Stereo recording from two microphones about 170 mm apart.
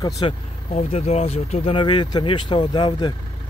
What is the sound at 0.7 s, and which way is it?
Speech, 40° left (ahead or behind).